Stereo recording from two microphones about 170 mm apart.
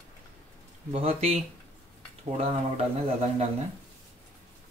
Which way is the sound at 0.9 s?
35° right (ahead or behind).